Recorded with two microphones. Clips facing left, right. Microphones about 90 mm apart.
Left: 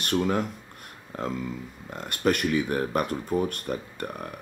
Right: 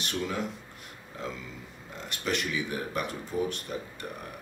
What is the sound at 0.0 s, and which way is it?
Speech, 50° left (ahead or behind).